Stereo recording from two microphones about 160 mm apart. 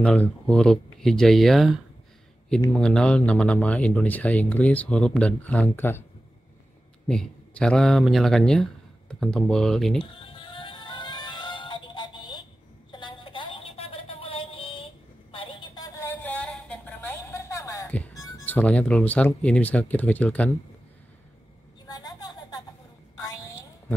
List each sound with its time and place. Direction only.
0.0 s speech: 5° left (ahead or behind)
7.1 s speech: 5° left (ahead or behind)
10.0 s music: 35° left (ahead or behind)
12.9 s a sound: 30° left (ahead or behind); by 18.2 s 10° left (ahead or behind)
18.2 s speech: 10° left (ahead or behind)
21.8 s vehicle: 25° left (ahead or behind)
23.1 s a sound: 20° left (ahead or behind)